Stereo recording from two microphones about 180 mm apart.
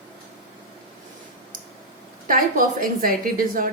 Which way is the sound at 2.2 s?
50° right (ahead or behind).